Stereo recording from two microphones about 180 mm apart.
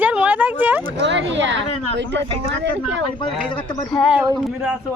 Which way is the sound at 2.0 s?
80° right.